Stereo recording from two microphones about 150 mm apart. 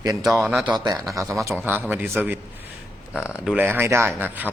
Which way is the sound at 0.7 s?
25° right (ahead or behind).